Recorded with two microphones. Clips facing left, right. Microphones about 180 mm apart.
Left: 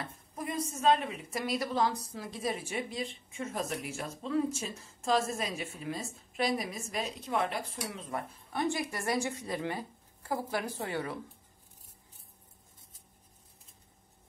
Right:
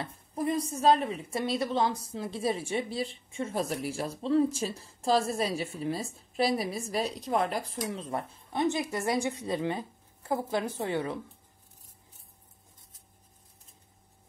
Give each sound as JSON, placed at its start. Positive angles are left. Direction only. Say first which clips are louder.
{"t": 0.0, "sound": "a woman's voice", "louder": "right 7 dB", "side_deg": -30}